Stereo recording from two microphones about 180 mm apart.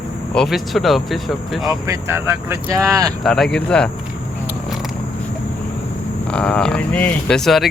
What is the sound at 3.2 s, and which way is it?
Speech, centre (ahead or behind).